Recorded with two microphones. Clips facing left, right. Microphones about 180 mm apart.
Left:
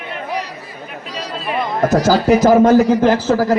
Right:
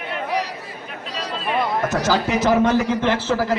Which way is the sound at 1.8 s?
35° left (ahead or behind).